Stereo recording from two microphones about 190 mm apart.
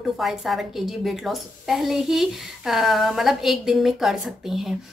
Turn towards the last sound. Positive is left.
turn(degrees=0)  # may be behind; listen again after turning